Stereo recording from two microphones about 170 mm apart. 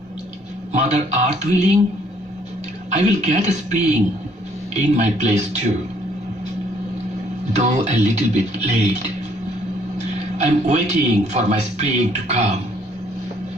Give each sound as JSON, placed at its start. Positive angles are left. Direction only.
{"t": 0.7, "sound": "speech", "side_deg": -40}
{"t": 2.9, "sound": "speech", "side_deg": -45}
{"t": 7.5, "sound": "speech", "side_deg": -40}
{"t": 10.3, "sound": "speech", "side_deg": -40}